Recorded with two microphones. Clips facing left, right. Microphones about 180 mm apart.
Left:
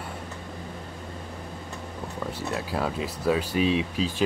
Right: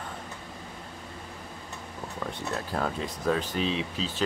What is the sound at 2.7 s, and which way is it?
Speech, 5° left (ahead or behind).